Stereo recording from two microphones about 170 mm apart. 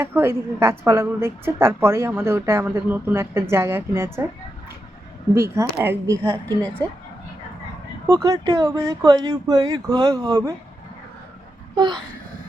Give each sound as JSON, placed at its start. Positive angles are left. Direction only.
{"t": 0.0, "sound": "a woman's voice", "side_deg": -15}
{"t": 5.3, "sound": "a woman's voice", "side_deg": -15}
{"t": 8.1, "sound": "speech", "side_deg": -25}
{"t": 11.7, "sound": "a sound", "side_deg": -25}